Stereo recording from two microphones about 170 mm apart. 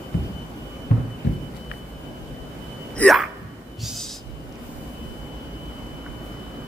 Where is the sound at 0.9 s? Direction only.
55° left (ahead or behind).